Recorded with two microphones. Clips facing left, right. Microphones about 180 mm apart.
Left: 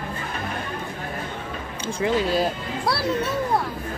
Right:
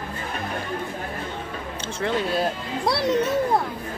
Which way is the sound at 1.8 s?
5° left (ahead or behind).